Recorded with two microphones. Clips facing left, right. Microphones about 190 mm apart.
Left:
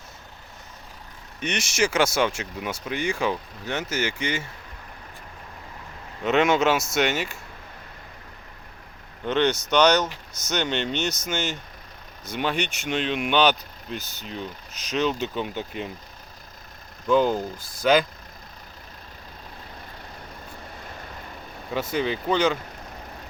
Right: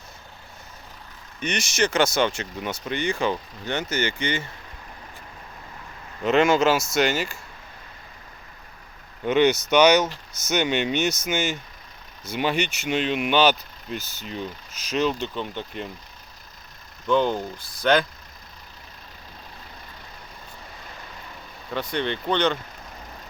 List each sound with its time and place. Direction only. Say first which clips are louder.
1.4 s speech: even; 5° left (ahead or behind)
6.2 s speech: right 2 dB; centre (ahead or behind)
9.2 s speech: right 3 dB; 10° right (ahead or behind)
10.1 s speech: right 1 dB; 15° left (ahead or behind)
10.5 s speech: right 3 dB; 10° right (ahead or behind)
17.1 s speech: left 1 dB; 5° left (ahead or behind)
21.9 s speech: left 1 dB; 5° left (ahead or behind)